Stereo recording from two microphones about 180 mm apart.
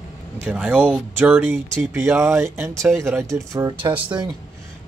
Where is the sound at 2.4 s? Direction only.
15° right (ahead or behind).